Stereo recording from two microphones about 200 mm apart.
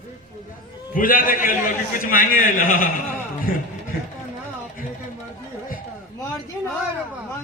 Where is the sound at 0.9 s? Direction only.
45° left (ahead or behind).